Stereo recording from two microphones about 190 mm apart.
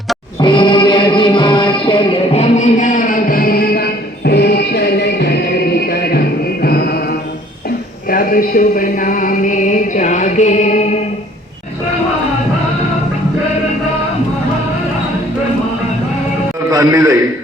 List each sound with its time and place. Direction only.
0.3 s music: 25° left (ahead or behind)
16.6 s a man's voice: 20° right (ahead or behind)